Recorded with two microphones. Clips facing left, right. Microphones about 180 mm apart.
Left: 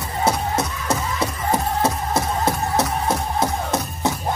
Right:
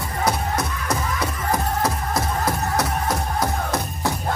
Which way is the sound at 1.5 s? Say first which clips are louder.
Left 2 dB; 25° left (ahead or behind).